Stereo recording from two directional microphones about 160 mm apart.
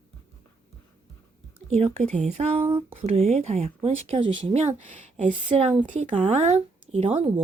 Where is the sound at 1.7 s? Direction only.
45° right (ahead or behind).